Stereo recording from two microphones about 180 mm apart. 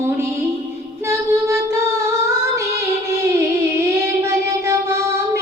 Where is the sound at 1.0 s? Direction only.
15° right (ahead or behind).